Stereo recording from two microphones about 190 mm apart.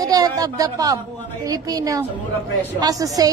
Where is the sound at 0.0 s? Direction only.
20° right (ahead or behind).